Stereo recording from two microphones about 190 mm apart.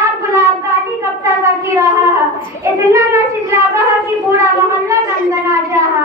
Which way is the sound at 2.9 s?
15° right (ahead or behind).